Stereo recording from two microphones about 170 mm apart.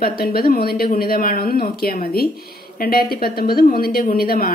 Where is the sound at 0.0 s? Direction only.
60° left (ahead or behind).